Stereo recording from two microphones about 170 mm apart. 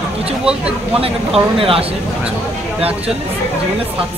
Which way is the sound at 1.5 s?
30° right (ahead or behind).